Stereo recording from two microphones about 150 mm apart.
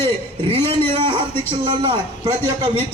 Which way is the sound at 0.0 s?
40° right (ahead or behind).